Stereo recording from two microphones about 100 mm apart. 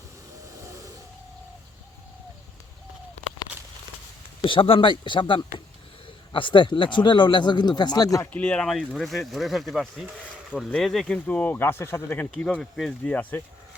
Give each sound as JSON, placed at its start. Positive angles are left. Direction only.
{"t": 4.4, "sound": "speech", "side_deg": 65}
{"t": 8.2, "sound": "speech", "side_deg": 15}